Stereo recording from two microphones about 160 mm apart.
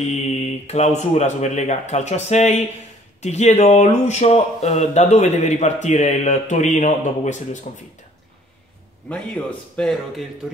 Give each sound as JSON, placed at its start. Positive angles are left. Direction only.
{"t": 0.1, "sound": "speech", "side_deg": 40}
{"t": 9.1, "sound": "a man's voice", "side_deg": 5}